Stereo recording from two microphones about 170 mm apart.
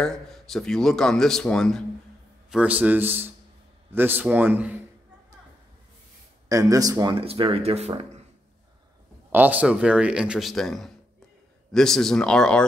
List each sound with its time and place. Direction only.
0.0 s speech: centre (ahead or behind)
2.5 s a man's voice: 10° right (ahead or behind)
6.5 s speech: 20° right (ahead or behind); by 8.1 s 40° right (ahead or behind)
9.3 s speech: 10° right (ahead or behind)